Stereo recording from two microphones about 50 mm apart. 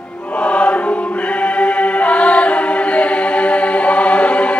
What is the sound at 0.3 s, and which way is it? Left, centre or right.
Choir, left.